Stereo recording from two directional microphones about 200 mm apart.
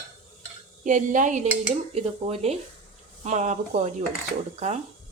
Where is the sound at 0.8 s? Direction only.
40° right (ahead or behind).